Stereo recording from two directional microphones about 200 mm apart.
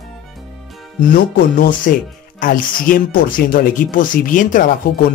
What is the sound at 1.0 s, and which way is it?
Speech, 45° left (ahead or behind).